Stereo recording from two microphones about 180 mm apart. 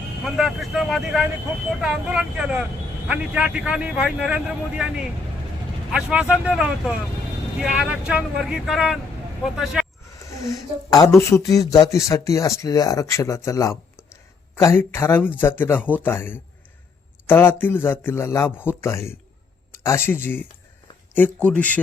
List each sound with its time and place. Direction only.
0.3 s speech: centre (ahead or behind)
10.2 s speech: 15° left (ahead or behind)
18.5 s speech: 10° right (ahead or behind)
18.8 s speech: 15° left (ahead or behind)